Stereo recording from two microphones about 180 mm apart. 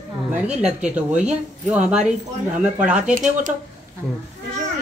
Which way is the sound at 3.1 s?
45° right (ahead or behind).